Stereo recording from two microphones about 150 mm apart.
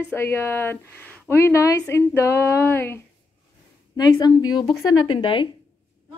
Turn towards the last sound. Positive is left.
turn(degrees=35)  # may be behind; listen again after turning